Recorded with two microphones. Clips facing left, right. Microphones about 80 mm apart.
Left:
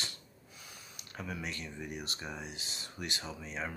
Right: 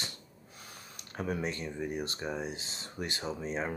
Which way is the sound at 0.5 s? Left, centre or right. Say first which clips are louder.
Right 3 dB; right.